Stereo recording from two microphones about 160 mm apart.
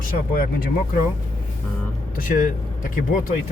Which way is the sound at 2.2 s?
60° left (ahead or behind).